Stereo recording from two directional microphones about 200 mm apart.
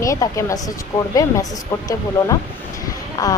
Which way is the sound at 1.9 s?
15° left (ahead or behind).